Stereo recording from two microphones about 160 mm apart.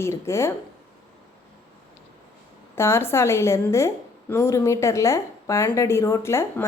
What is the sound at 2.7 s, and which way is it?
A woman's voice, 15° left (ahead or behind).